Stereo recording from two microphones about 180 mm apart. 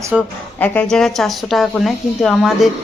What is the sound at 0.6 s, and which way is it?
Speech, 5° left (ahead or behind).